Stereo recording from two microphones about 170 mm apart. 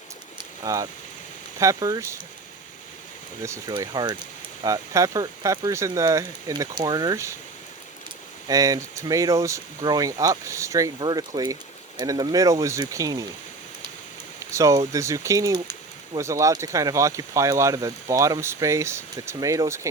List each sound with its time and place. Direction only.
0.3 s a sound: 20° right (ahead or behind)
1.5 s speech: 20° right (ahead or behind)
3.4 s speech: 15° right (ahead or behind)
8.4 s speech: 20° right (ahead or behind)
14.5 s speech: 20° right (ahead or behind)